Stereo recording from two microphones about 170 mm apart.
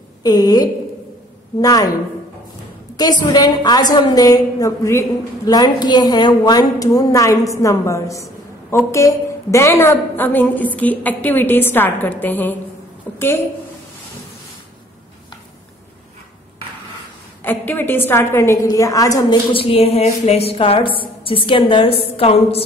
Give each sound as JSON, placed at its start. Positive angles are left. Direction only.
{"t": 0.2, "sound": "a woman's voice", "side_deg": 20}
{"t": 3.0, "sound": "a woman's voice", "side_deg": 25}
{"t": 17.4, "sound": "a woman's voice", "side_deg": 10}
{"t": 19.5, "sound": "a woman's voice", "side_deg": 35}